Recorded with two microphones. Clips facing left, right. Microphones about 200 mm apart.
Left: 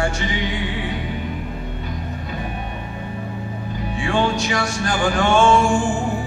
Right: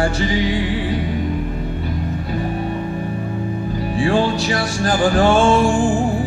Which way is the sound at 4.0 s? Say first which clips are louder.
Right 3 dB; 35° right (ahead or behind).